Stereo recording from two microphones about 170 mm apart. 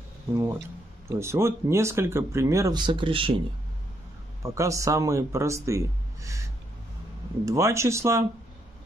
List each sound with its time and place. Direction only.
1.0 s speech: 15° right (ahead or behind)
4.4 s speech: 15° right (ahead or behind)
7.4 s speech: 20° right (ahead or behind)